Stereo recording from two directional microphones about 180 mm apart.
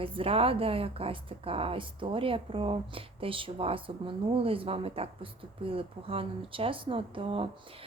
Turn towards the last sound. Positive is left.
turn(degrees=-30)  # may be behind; listen again after turning